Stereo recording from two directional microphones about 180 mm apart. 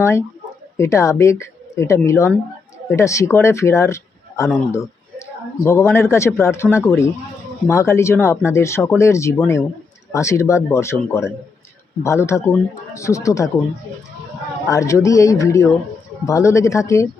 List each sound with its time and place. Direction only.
0.0 s speech: 15° left (ahead or behind)
14.7 s speech: 15° left (ahead or behind)